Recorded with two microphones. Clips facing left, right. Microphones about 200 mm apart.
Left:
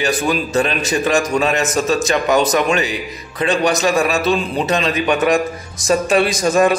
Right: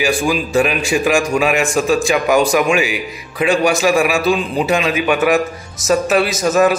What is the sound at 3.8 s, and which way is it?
A man's voice, 10° right (ahead or behind).